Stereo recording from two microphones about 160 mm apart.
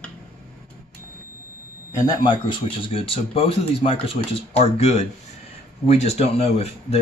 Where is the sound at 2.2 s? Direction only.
30° left (ahead or behind).